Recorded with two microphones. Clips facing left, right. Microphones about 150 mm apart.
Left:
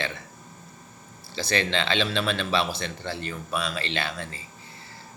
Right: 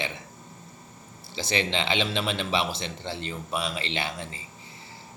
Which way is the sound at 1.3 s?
20° right (ahead or behind).